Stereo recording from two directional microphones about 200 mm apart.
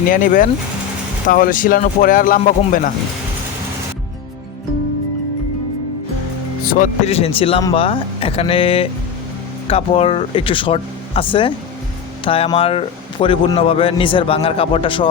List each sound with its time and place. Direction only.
0.1 s speech: 45° left (ahead or behind)
6.7 s speech: 40° left (ahead or behind); by 15.0 s 25° left (ahead or behind)